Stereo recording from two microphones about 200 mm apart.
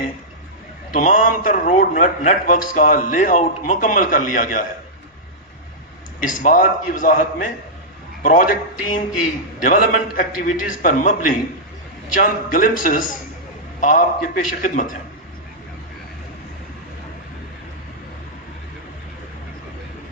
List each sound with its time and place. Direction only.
0.9 s a man's voice: 40° left (ahead or behind)
6.2 s a man's voice: 40° left (ahead or behind)
9.6 s a man's voice: 40° left (ahead or behind)